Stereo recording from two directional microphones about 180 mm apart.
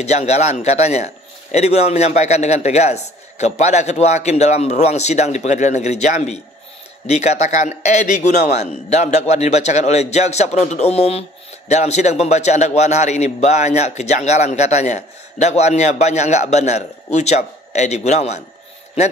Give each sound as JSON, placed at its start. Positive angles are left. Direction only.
{"t": 0.0, "sound": "a man's voice", "side_deg": 40}